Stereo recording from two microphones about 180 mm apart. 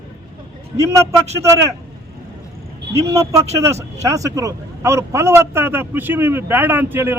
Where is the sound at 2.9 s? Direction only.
15° right (ahead or behind).